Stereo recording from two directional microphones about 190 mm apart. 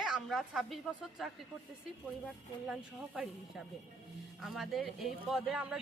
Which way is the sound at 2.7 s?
5° right (ahead or behind).